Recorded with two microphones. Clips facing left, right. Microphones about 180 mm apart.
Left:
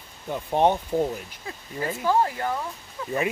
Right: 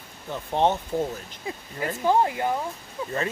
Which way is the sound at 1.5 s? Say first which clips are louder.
Even; 15° right (ahead or behind).